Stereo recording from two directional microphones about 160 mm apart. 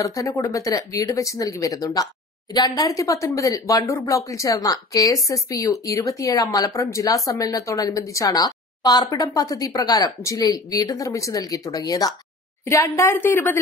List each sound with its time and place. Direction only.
0.0 s a woman's voice: 20° left (ahead or behind)